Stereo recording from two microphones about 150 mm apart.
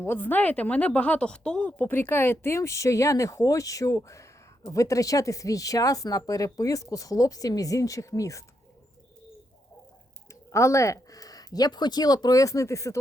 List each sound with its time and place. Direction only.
0.0 s speech: 15° left (ahead or behind)
10.5 s speech: 20° left (ahead or behind)